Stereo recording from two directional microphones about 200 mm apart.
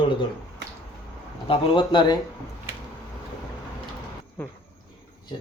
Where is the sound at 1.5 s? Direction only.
25° left (ahead or behind).